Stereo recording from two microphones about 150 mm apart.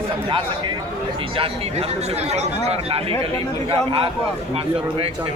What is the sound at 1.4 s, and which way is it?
Speech, 40° right (ahead or behind).